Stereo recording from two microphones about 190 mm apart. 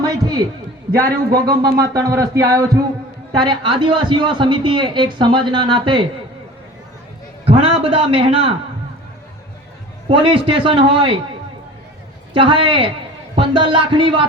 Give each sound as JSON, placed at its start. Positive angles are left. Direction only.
{"t": 0.0, "sound": "a sound", "side_deg": -20}
{"t": 0.9, "sound": "speech", "side_deg": -20}
{"t": 7.4, "sound": "a man's voice", "side_deg": -30}
{"t": 10.1, "sound": "speech", "side_deg": -30}
{"t": 12.3, "sound": "speech", "side_deg": -25}